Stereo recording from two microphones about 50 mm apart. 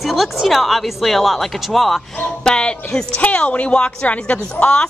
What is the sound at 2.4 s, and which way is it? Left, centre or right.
Speech, centre.